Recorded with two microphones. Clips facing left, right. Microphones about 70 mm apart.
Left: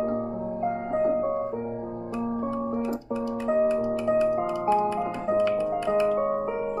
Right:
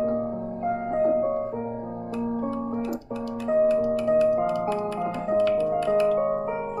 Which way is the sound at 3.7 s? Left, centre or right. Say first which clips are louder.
Right 2 dB; left.